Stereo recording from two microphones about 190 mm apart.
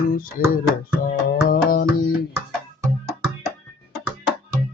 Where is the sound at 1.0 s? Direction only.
50° left (ahead or behind).